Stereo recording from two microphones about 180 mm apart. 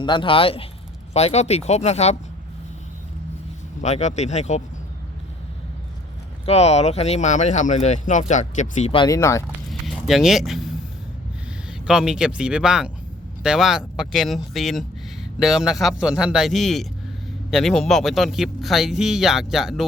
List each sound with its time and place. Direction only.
0.0 s speech: 25° left (ahead or behind)
3.8 s speech: 40° left (ahead or behind)
6.4 s speech: 35° left (ahead or behind)
9.0 s speech: 15° left (ahead or behind)
9.6 s a sound: centre (ahead or behind)
11.7 s speech: 5° right (ahead or behind)